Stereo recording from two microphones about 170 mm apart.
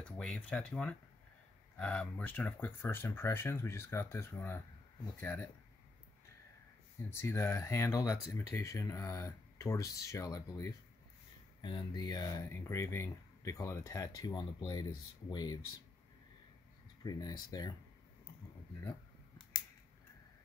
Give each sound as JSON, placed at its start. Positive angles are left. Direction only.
{"t": 0.0, "sound": "speech", "side_deg": 5}
{"t": 7.1, "sound": "speech", "side_deg": 15}
{"t": 17.0, "sound": "speech", "side_deg": 20}